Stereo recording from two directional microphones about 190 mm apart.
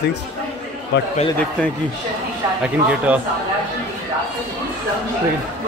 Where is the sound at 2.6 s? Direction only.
5° right (ahead or behind).